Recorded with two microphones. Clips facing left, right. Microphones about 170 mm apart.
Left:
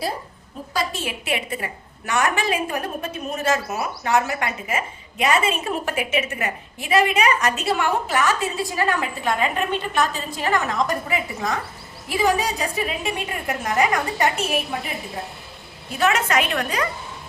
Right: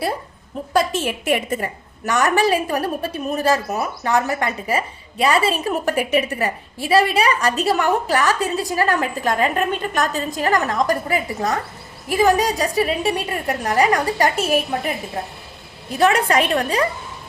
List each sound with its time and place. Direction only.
0.7 s a woman's voice: 50° right (ahead or behind)
16.0 s a woman's voice: 35° right (ahead or behind)